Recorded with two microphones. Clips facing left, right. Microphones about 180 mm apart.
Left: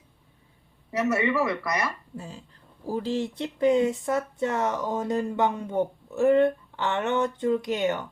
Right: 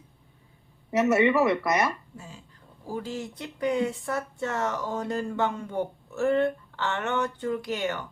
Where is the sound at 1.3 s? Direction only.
25° right (ahead or behind).